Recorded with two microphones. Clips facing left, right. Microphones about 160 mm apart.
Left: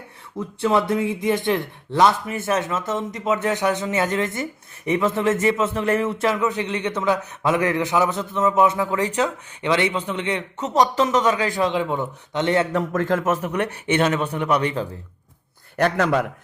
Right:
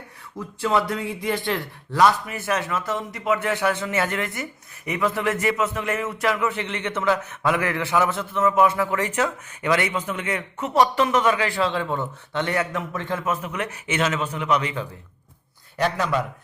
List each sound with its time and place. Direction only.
0.3 s a man's voice: 25° left (ahead or behind)
12.7 s speech: 45° left (ahead or behind)
13.5 s speech: 35° left (ahead or behind)
14.3 s speech: 45° left (ahead or behind)
15.8 s a man's voice: 60° left (ahead or behind)